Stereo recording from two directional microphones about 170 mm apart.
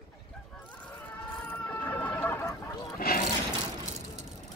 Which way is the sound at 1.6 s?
10° left (ahead or behind).